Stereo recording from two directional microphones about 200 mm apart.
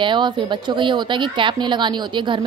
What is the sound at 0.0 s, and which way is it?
A woman's voice, 25° right (ahead or behind).